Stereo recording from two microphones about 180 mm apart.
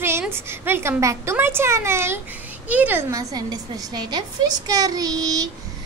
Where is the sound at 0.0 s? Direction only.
15° right (ahead or behind).